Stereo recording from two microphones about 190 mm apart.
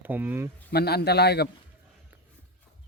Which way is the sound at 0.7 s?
55° left (ahead or behind).